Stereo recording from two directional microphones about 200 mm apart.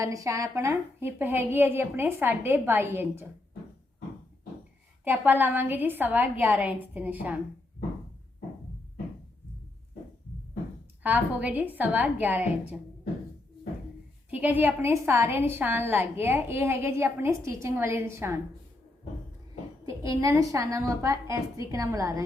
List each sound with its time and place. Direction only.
0.0 s a woman's voice: 15° right (ahead or behind)
5.0 s a woman's voice: 10° right (ahead or behind)
11.0 s a woman's voice: 5° right (ahead or behind)
14.3 s a woman's voice: 10° right (ahead or behind)
19.8 s a woman's voice: 15° right (ahead or behind)